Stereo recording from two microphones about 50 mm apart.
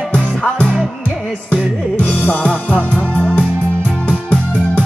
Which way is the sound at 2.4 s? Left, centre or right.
Centre.